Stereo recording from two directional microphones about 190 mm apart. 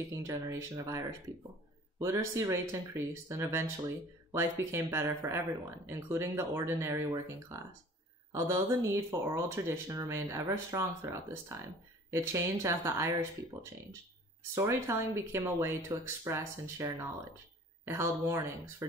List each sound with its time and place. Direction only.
0.3 s speech: 15° right (ahead or behind)